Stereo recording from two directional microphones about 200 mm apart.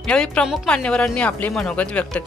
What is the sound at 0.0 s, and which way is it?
Speech, 5° left (ahead or behind).